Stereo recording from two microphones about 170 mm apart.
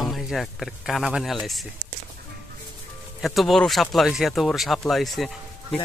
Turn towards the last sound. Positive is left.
turn(degrees=0)  # may be behind; listen again after turning